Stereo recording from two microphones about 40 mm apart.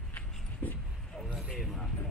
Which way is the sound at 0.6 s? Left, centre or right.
Left.